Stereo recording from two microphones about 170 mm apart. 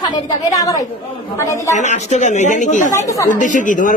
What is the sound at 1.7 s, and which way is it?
Speech, 45° left (ahead or behind).